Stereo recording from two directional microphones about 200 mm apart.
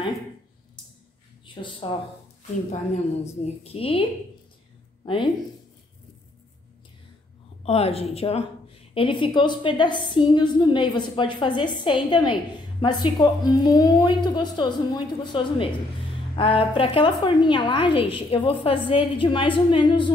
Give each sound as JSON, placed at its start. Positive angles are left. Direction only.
{"t": 1.4, "sound": "speech", "side_deg": 25}
{"t": 3.6, "sound": "a woman's voice", "side_deg": 30}
{"t": 7.6, "sound": "a woman's voice", "side_deg": 30}